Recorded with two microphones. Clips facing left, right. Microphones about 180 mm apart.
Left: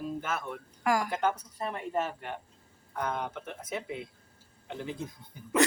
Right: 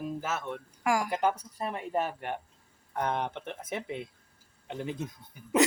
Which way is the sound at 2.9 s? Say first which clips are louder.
Right 3 dB; 35° right (ahead or behind).